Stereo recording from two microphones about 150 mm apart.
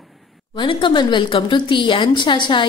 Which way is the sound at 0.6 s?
35° left (ahead or behind).